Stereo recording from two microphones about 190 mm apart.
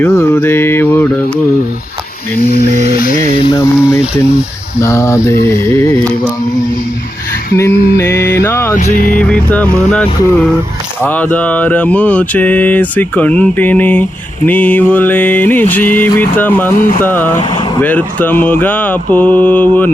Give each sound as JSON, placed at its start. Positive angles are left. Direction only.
{"t": 0.0, "sound": "mantra", "side_deg": 15}
{"t": 2.4, "sound": "a sound", "side_deg": 55}
{"t": 2.8, "sound": "music", "side_deg": 50}
{"t": 3.4, "sound": "mantra", "side_deg": 20}
{"t": 7.5, "sound": "mantra", "side_deg": 15}
{"t": 7.9, "sound": "music", "side_deg": 15}
{"t": 8.7, "sound": "vehicle", "side_deg": 45}
{"t": 9.1, "sound": "speech", "side_deg": 5}
{"t": 11.0, "sound": "mantra", "side_deg": 10}